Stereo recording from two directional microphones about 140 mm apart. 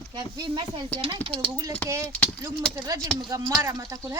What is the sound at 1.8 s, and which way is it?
Speech, 10° left (ahead or behind).